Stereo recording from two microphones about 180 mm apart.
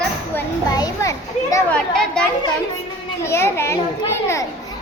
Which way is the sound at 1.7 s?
5° left (ahead or behind).